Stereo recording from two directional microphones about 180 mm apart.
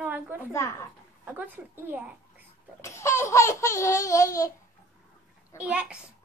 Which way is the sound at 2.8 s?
15° left (ahead or behind).